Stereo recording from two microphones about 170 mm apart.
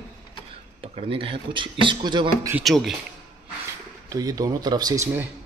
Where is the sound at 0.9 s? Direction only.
30° right (ahead or behind).